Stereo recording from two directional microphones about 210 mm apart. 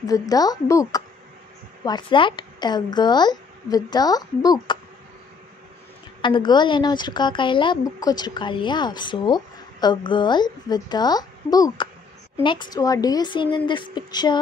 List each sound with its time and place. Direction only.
0.0 s a woman's voice: 15° left (ahead or behind)
6.2 s a woman's voice: 20° left (ahead or behind)